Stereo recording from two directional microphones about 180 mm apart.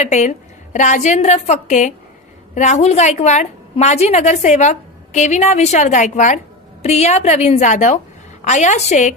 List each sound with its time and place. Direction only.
0.0 s a woman's voice: 40° left (ahead or behind)